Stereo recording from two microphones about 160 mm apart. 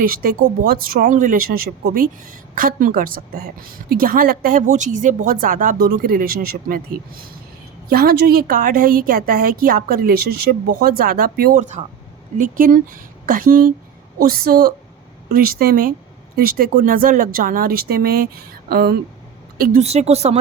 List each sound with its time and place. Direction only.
0.0 s a woman's voice: 65° right (ahead or behind)
7.9 s a woman's voice: 70° right (ahead or behind)
19.5 s a woman's voice: 60° right (ahead or behind)
19.8 s speech: 40° right (ahead or behind)